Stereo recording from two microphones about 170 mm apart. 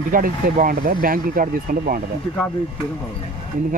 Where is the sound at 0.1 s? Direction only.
55° right (ahead or behind).